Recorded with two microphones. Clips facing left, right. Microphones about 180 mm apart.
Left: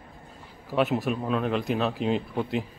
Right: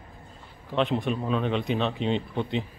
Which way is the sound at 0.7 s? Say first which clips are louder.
Left 1 dB; 5° left (ahead or behind).